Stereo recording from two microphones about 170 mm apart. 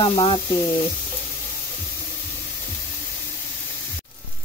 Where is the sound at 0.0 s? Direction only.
30° left (ahead or behind).